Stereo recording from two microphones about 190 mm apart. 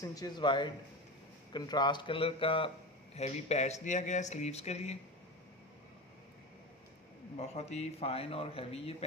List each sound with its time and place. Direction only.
0.0 s speech: 20° left (ahead or behind); by 4.9 s 35° left (ahead or behind)
7.3 s speech: 35° left (ahead or behind)